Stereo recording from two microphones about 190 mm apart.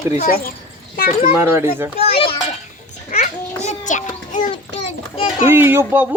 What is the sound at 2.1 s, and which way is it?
Children playing, 30° left (ahead or behind).